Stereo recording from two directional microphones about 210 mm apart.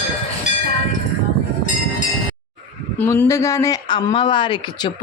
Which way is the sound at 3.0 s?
10° left (ahead or behind).